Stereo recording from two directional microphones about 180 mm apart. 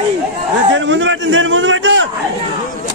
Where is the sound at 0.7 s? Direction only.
90° right.